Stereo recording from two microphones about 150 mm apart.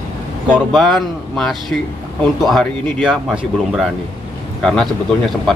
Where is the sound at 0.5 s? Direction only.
Centre (ahead or behind).